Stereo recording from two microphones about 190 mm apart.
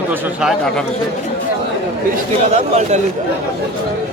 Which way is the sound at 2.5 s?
35° right (ahead or behind).